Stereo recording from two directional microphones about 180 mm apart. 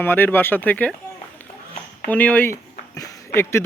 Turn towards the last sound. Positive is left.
turn(degrees=15)  # may be behind; listen again after turning